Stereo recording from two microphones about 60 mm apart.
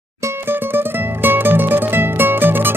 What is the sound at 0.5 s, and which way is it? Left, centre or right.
Music, right.